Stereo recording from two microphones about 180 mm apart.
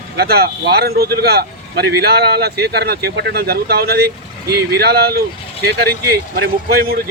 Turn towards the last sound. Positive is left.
turn(degrees=-55)  # may be behind; listen again after turning